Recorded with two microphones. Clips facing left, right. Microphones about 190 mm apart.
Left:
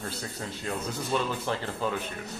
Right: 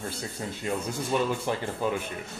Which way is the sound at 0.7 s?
15° right (ahead or behind).